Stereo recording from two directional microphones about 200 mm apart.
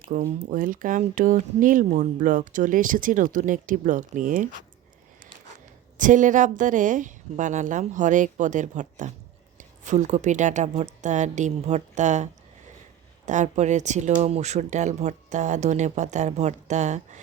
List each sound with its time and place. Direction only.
0.1 s speech: 40° right (ahead or behind)
6.0 s speech: 40° right (ahead or behind)